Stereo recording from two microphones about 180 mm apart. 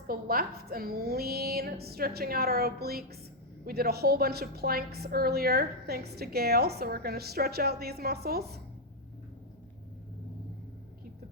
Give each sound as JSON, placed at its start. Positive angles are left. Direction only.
{"t": 0.1, "sound": "a woman's voice", "side_deg": -55}